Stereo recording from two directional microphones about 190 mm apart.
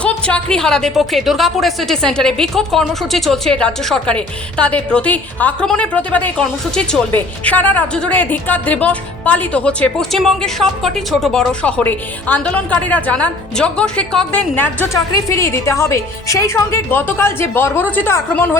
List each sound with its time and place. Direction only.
0.0 s a woman's voice: 5° left (ahead or behind)